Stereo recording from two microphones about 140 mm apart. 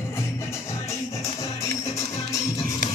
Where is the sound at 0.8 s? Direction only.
25° left (ahead or behind).